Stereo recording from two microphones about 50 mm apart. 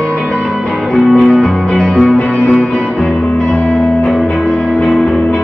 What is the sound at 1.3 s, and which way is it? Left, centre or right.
Music, centre.